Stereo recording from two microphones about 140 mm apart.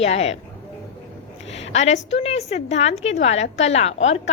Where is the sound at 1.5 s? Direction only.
50° left (ahead or behind).